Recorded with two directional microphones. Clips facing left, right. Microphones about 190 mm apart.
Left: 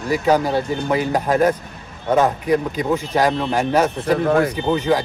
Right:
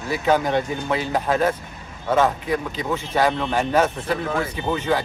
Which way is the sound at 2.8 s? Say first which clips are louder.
Even; 15° left (ahead or behind).